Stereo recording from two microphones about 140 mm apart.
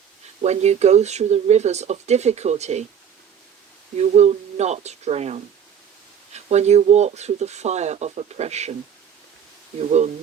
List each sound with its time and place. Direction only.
0.4 s speech: 55° right (ahead or behind)
3.9 s speech: 50° right (ahead or behind)